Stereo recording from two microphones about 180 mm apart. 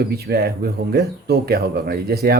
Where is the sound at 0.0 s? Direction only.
60° right (ahead or behind).